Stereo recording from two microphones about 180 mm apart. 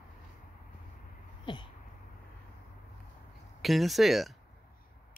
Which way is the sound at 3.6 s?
Centre (ahead or behind).